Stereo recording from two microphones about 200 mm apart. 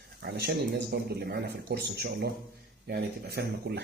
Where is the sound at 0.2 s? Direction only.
55° right (ahead or behind).